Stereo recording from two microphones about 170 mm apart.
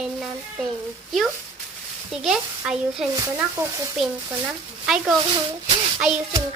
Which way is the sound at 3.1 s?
15° right (ahead or behind).